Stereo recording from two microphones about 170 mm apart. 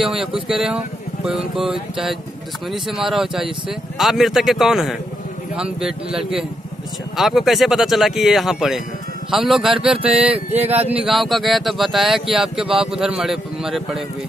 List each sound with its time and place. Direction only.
0.0 s speech: 5° right (ahead or behind)
10.3 s a sound: 40° right (ahead or behind)
11.1 s speech: centre (ahead or behind)